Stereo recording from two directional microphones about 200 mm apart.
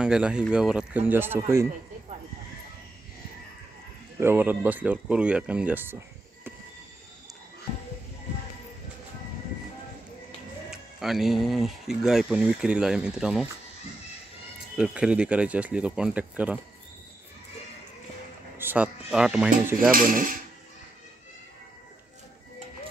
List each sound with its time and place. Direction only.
0.0 s speech: 5° right (ahead or behind)
4.2 s speech: 10° right (ahead or behind)
10.7 s speech: centre (ahead or behind)
14.8 s speech: 5° right (ahead or behind)
18.6 s speech: 10° right (ahead or behind)
19.9 s dishes: 45° right (ahead or behind)